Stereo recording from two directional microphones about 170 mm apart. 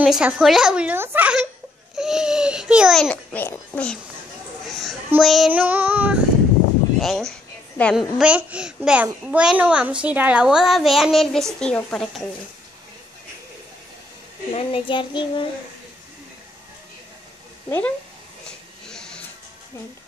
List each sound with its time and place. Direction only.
0.0 s speech: 5° right (ahead or behind)
4.6 s babbling: centre (ahead or behind)
5.2 s speech: centre (ahead or behind)
7.0 s a child's voice: centre (ahead or behind)
14.5 s child singing: 30° left (ahead or behind)
17.6 s speech: 10° left (ahead or behind)
18.9 s printer: 5° left (ahead or behind)